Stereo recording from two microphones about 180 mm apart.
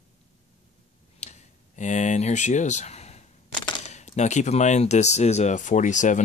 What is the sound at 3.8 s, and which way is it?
Speech, 40° left (ahead or behind).